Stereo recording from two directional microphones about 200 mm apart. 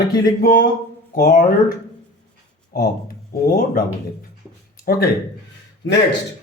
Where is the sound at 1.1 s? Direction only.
45° left (ahead or behind).